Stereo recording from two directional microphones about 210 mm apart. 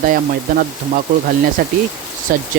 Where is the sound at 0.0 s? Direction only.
45° right (ahead or behind).